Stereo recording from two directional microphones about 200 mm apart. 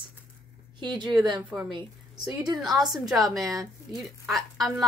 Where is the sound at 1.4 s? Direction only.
10° right (ahead or behind).